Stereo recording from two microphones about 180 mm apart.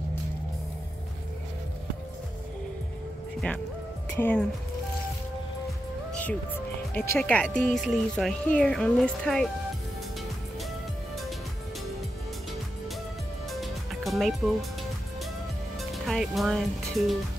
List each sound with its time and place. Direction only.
3.3 s speech: 5° left (ahead or behind)
6.9 s speech: 10° left (ahead or behind)
13.5 s music: centre (ahead or behind)
15.8 s speech: centre (ahead or behind)